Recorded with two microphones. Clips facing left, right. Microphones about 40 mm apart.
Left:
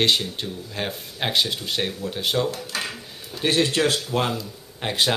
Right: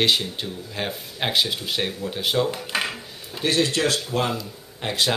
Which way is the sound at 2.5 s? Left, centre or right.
Right.